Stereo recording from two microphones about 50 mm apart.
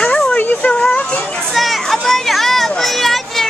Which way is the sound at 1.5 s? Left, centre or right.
Centre.